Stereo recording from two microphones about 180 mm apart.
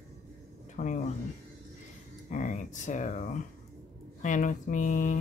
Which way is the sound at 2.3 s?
45° left (ahead or behind).